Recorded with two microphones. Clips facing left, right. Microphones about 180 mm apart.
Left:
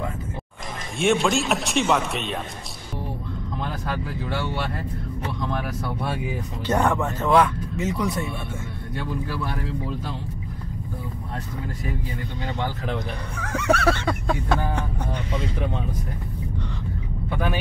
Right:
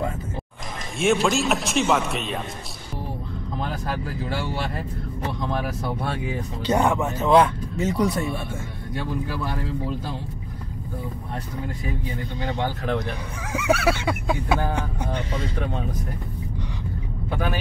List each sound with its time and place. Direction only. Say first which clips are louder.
0.9 s speech: even; centre (ahead or behind)
6.0 s speech: even; 5° left (ahead or behind)
6.6 s speech: right 1 dB; 15° right (ahead or behind)
7.2 s speech: right 2 dB; 25° right (ahead or behind)
7.7 s speech: right 3 dB; 35° right (ahead or behind)
12.8 s speech: right 3 dB; 5° right (ahead or behind)